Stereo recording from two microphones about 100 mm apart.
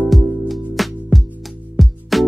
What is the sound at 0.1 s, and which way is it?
Music, centre (ahead or behind).